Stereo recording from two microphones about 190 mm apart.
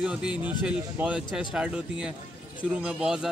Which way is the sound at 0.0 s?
5° right (ahead or behind).